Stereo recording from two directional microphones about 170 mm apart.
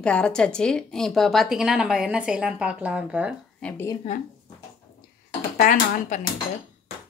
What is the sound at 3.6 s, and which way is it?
Speech, 5° left (ahead or behind).